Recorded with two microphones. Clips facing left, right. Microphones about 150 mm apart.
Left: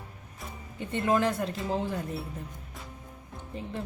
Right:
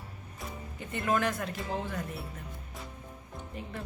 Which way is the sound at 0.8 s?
25° left (ahead or behind).